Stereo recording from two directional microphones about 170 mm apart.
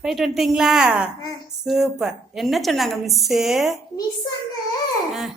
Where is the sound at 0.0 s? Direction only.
5° right (ahead or behind).